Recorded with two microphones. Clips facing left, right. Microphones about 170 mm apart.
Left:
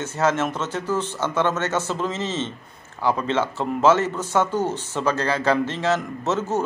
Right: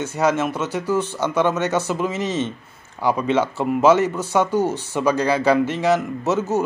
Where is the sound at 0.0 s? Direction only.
10° right (ahead or behind).